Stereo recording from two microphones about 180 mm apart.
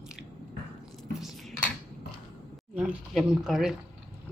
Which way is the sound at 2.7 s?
5° right (ahead or behind).